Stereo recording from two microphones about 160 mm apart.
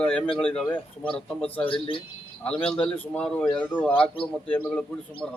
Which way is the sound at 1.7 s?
35° left (ahead or behind).